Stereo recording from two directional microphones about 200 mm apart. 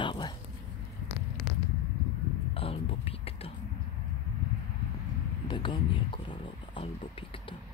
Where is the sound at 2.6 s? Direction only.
30° left (ahead or behind).